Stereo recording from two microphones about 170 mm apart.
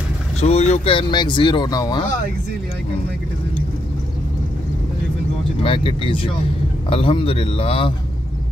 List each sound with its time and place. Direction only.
0.4 s speech: 40° left (ahead or behind); by 2.0 s 25° left (ahead or behind)
5.6 s speech: 30° left (ahead or behind)